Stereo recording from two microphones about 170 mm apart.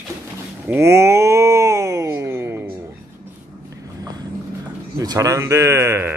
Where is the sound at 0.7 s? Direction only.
15° right (ahead or behind).